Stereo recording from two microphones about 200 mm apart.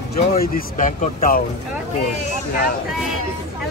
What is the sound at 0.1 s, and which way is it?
Speech, 45° left (ahead or behind).